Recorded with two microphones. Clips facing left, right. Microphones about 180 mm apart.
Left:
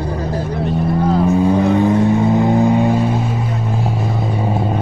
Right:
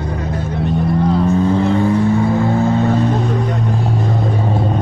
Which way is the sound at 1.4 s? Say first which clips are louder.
Left 1 dB; 15° left (ahead or behind).